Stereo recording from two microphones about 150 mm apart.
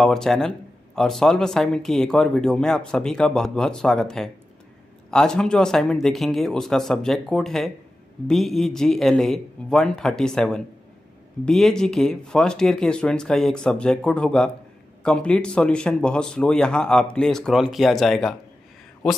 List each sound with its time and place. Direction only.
0.0 s speech: 5° left (ahead or behind)